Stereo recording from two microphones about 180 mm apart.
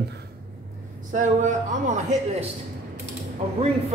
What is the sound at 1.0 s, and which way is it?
A man's voice, 45° right (ahead or behind).